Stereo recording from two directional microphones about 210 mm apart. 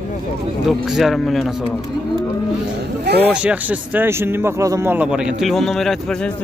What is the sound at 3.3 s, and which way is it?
Speech, 5° right (ahead or behind).